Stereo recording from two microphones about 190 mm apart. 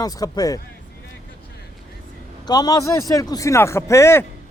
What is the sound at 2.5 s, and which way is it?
Speech, 20° left (ahead or behind).